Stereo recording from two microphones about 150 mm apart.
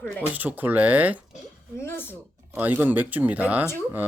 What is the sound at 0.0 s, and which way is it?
Speech, 5° left (ahead or behind).